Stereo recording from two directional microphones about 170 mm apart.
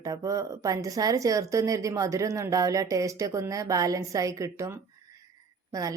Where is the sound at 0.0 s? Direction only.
20° right (ahead or behind).